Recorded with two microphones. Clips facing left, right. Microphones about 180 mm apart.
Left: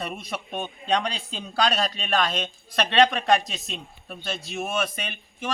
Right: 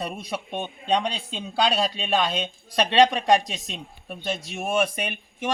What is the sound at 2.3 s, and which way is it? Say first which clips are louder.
Speech: right 1 dB; 10° right (ahead or behind).